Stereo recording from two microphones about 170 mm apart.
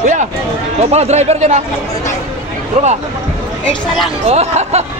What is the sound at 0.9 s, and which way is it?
Speech, 40° right (ahead or behind).